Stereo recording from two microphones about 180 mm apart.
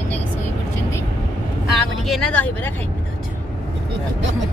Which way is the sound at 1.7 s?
Centre (ahead or behind).